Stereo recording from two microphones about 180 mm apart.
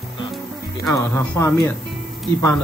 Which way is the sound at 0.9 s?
15° left (ahead or behind).